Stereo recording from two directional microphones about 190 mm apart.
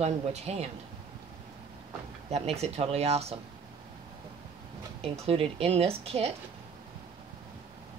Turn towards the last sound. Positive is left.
turn(degrees=-30)  # may be behind; listen again after turning